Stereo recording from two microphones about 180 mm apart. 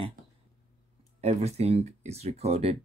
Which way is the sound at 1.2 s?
35° right (ahead or behind).